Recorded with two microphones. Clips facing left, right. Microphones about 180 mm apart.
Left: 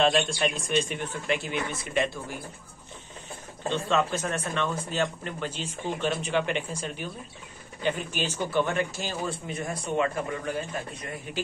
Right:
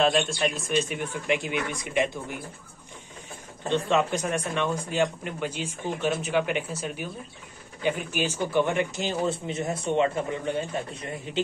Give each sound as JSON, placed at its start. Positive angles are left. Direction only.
{"t": 0.0, "sound": "speech", "side_deg": 0}
{"t": 3.6, "sound": "speech", "side_deg": -15}